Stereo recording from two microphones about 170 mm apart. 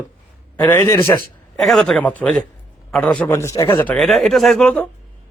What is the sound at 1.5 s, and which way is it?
A man's voice, centre (ahead or behind).